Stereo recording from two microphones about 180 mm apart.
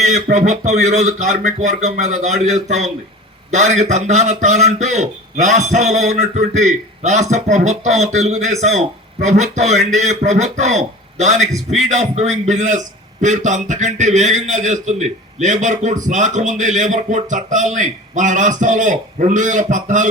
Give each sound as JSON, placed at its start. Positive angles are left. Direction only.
{"t": 0.0, "sound": "a man's voice", "side_deg": -40}